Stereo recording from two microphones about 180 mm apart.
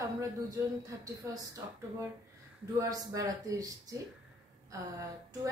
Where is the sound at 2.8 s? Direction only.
20° right (ahead or behind).